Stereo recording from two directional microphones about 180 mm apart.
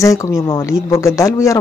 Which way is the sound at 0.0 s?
15° left (ahead or behind).